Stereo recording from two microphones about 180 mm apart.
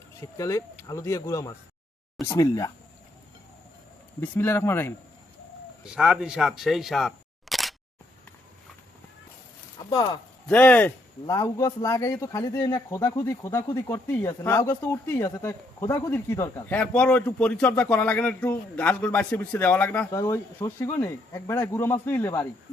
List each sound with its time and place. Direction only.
0.2 s speech: 15° left (ahead or behind)
4.2 s speech: 10° left (ahead or behind)
5.8 s speech: 5° right (ahead or behind)
7.5 s single-lens reflex camera: centre (ahead or behind)
9.9 s speech: 25° left (ahead or behind)
10.5 s speech: 10° left (ahead or behind)